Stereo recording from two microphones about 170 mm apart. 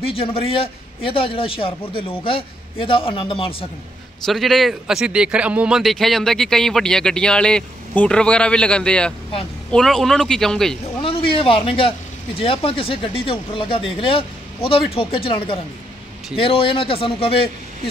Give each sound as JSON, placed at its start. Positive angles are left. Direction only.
{"t": 0.0, "sound": "a man's voice", "side_deg": 35}
{"t": 4.3, "sound": "speech", "side_deg": 0}
{"t": 11.0, "sound": "a man's voice", "side_deg": 30}